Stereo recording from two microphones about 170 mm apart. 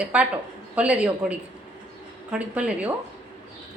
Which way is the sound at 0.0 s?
5° right (ahead or behind).